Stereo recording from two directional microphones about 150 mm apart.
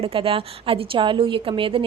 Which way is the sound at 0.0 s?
40° right (ahead or behind).